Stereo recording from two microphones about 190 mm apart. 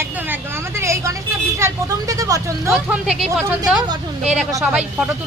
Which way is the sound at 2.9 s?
Centre (ahead or behind).